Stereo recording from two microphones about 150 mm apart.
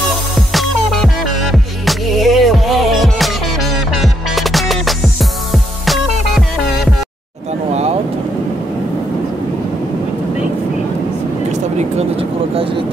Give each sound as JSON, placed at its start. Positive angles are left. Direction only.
{"t": 0.1, "sound": "music", "side_deg": 0}
{"t": 11.5, "sound": "vehicle", "side_deg": -40}